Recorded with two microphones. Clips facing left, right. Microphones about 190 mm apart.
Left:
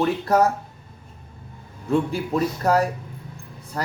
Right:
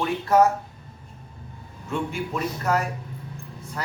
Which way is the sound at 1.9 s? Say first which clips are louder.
Left 6 dB; 35° left (ahead or behind).